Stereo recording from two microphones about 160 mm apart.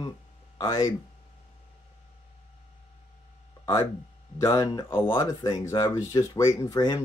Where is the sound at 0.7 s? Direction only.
20° left (ahead or behind).